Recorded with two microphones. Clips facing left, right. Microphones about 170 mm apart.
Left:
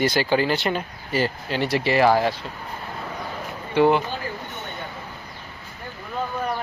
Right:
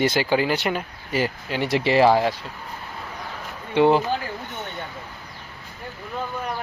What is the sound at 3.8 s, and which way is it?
Speech, 20° right (ahead or behind).